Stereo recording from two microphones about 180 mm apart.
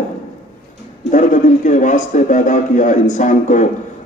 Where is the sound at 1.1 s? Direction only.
45° left (ahead or behind).